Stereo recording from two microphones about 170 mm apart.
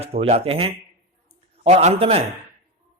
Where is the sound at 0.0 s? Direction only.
35° right (ahead or behind).